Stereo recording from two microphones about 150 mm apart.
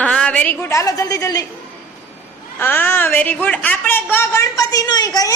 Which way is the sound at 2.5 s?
10° left (ahead or behind).